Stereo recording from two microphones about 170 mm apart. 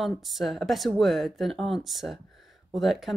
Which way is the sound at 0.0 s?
Centre (ahead or behind).